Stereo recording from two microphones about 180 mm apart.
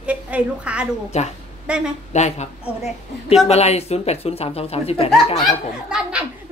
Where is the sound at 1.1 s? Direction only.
40° left (ahead or behind).